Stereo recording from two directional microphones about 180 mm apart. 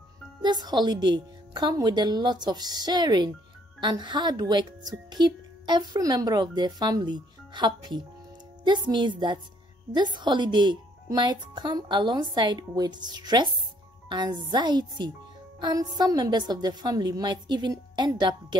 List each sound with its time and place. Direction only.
0.4 s a woman's voice: 25° right (ahead or behind)